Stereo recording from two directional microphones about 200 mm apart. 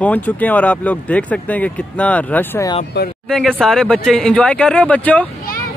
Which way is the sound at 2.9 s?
60° left (ahead or behind).